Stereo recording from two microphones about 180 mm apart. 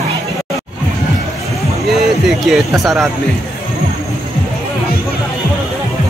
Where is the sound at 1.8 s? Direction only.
Centre (ahead or behind).